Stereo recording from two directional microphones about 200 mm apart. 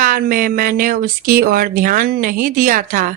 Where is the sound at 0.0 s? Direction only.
45° right (ahead or behind).